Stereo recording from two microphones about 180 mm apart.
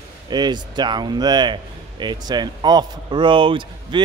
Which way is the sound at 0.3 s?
25° right (ahead or behind).